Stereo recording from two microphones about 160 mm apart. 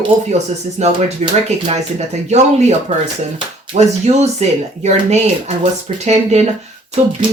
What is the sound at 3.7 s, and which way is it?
Speech, 45° right (ahead or behind).